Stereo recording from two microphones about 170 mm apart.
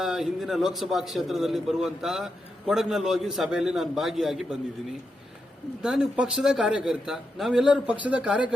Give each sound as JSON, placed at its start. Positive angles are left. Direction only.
{"t": 0.0, "sound": "a man's voice", "side_deg": 0}
{"t": 5.8, "sound": "a man's voice", "side_deg": -5}